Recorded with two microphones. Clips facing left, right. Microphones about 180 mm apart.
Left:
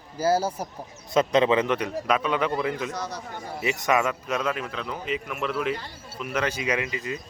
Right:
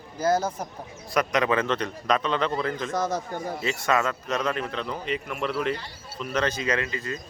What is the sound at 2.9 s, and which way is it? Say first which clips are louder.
Speech: right 6 dB; 50° right (ahead or behind).